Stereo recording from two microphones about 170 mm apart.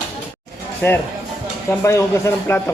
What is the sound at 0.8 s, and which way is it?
Speech, 10° left (ahead or behind).